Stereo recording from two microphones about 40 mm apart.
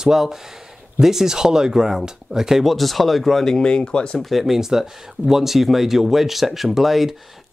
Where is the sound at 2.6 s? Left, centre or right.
Centre.